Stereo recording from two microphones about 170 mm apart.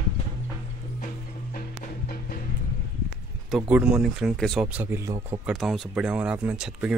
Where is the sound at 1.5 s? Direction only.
60° left (ahead or behind).